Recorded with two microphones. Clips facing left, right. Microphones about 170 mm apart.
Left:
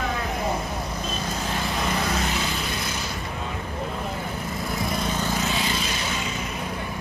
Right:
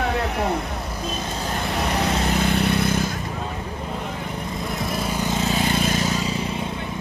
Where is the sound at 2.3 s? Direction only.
60° right (ahead or behind).